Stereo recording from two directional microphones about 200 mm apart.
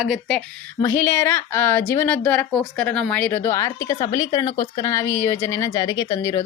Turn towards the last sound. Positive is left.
turn(degrees=15)  # may be behind; listen again after turning